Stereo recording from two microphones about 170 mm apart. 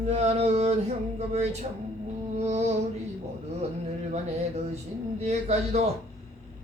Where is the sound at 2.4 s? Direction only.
40° right (ahead or behind).